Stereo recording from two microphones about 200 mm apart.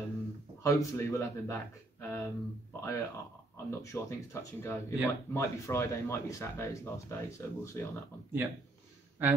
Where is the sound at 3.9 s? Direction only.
10° left (ahead or behind).